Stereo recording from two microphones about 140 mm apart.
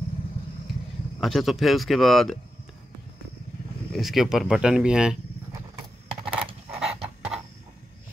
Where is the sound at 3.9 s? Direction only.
Centre (ahead or behind).